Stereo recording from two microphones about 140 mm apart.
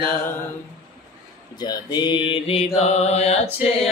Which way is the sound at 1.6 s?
30° left (ahead or behind).